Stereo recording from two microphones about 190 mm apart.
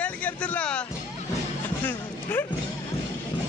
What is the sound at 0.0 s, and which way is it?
Speech, 5° left (ahead or behind).